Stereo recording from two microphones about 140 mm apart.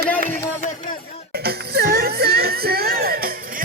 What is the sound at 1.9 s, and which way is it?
Music, 90° right.